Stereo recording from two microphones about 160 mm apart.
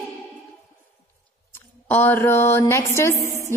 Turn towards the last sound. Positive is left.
turn(degrees=15)  # may be behind; listen again after turning